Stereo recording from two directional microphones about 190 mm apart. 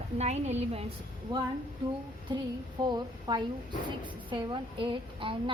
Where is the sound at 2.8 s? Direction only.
25° right (ahead or behind).